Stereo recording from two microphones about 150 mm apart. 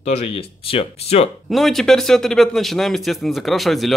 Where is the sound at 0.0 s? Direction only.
45° left (ahead or behind).